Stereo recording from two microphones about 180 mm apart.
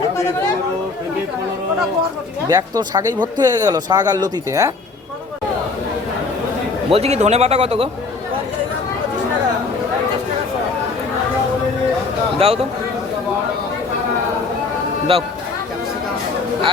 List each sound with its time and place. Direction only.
2.5 s speech: 20° right (ahead or behind)
6.9 s a man's voice: 35° right (ahead or behind)
12.4 s a man's voice: 35° right (ahead or behind)
15.1 s a man's voice: 30° right (ahead or behind)